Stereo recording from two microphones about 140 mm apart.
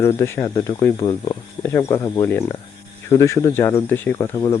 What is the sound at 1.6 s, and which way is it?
Speech, 20° left (ahead or behind).